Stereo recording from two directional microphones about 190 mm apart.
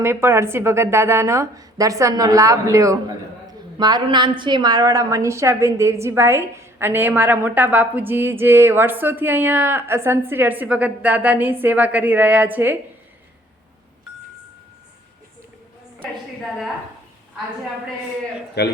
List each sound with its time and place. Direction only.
0.0 s a woman's voice: 10° right (ahead or behind)
16.4 s a woman's voice: centre (ahead or behind)
18.6 s speech: 60° left (ahead or behind)